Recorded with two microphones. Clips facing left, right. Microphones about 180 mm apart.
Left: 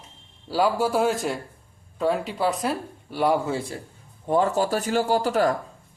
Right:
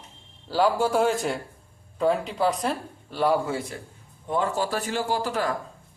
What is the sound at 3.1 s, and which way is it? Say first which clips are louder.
Speech: left 1 dB; 15° left (ahead or behind).